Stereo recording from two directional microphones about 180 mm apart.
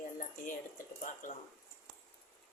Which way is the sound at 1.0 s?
45° left (ahead or behind).